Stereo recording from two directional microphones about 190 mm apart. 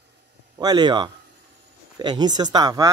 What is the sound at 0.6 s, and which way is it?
Speech, 20° right (ahead or behind).